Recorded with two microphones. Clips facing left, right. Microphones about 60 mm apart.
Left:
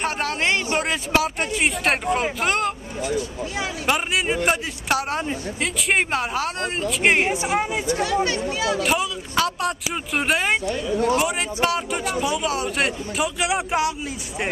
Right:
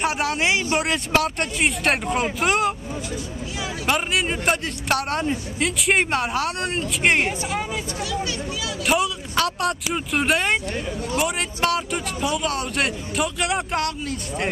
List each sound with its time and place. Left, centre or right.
0.0 s speech: centre
3.8 s speech: centre
7.2 s speech: left
8.0 s speech: left
8.8 s speech: centre